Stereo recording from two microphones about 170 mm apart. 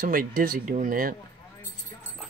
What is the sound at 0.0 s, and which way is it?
Speech, 55° right (ahead or behind).